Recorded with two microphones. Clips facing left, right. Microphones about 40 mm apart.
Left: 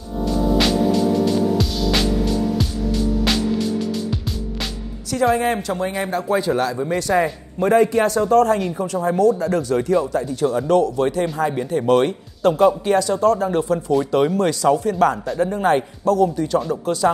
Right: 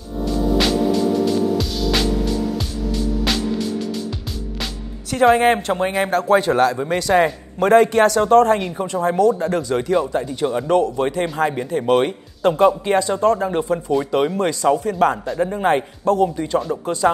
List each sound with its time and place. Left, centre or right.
0.6 s music: centre
3.3 s music: centre
5.1 s speech: right
6.0 s speech: right
9.9 s speech: right
15.3 s speech: right
15.6 s speech: right